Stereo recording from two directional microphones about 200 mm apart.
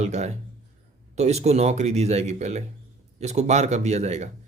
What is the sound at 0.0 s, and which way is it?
Speech, 35° right (ahead or behind).